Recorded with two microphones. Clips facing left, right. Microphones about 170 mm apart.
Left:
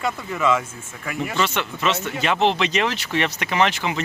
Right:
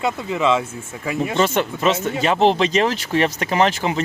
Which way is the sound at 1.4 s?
45° right (ahead or behind).